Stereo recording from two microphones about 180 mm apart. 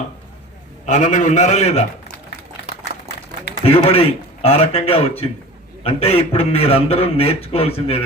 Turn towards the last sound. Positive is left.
turn(degrees=35)  # may be behind; listen again after turning